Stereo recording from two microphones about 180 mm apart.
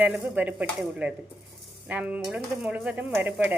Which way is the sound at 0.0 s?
10° right (ahead or behind).